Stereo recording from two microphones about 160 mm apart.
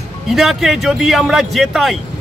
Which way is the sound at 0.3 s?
Centre (ahead or behind).